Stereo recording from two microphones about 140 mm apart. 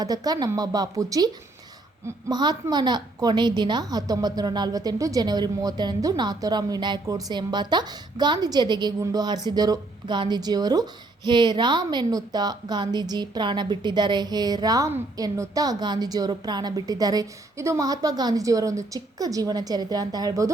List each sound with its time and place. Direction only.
0.0 s a woman's voice: 25° right (ahead or behind)